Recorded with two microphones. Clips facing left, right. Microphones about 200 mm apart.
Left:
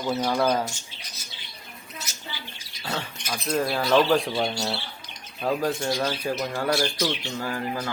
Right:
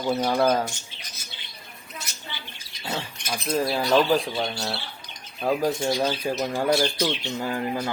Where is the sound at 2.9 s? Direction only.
10° right (ahead or behind).